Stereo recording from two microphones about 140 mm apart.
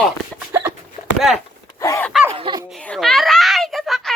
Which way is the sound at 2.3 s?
45° right (ahead or behind).